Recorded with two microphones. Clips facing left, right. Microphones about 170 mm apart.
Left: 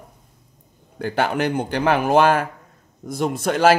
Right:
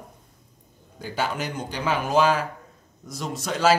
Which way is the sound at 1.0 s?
60° left (ahead or behind).